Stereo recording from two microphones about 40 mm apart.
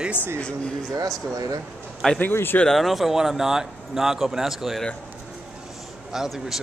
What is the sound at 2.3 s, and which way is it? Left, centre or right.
Speech, left.